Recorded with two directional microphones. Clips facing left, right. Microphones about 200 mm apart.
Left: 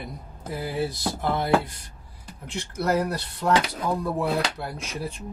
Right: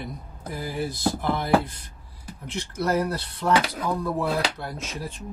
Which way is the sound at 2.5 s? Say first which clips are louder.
Even; 15° left (ahead or behind).